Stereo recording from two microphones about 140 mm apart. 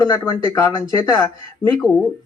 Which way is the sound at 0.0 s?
20° left (ahead or behind).